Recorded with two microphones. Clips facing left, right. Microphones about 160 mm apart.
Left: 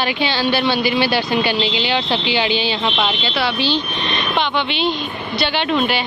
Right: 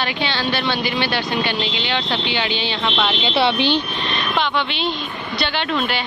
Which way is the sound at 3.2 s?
25° right (ahead or behind).